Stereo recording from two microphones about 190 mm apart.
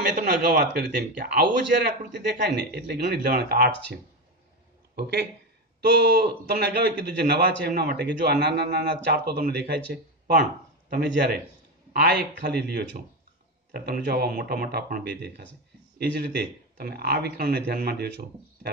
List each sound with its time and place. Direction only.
0.0 s a man's voice: 45° right (ahead or behind)
5.9 s a man's voice: 55° right (ahead or behind)
10.9 s a man's voice: 60° right (ahead or behind)